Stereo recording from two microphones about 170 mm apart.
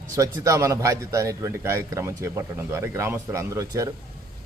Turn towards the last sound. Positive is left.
turn(degrees=-20)  # may be behind; listen again after turning